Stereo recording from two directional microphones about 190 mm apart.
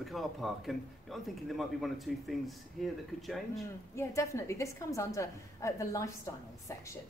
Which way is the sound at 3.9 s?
15° left (ahead or behind).